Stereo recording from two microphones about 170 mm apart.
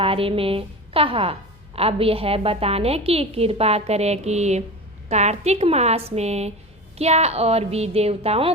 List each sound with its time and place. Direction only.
0.0 s a woman's voice: 35° right (ahead or behind)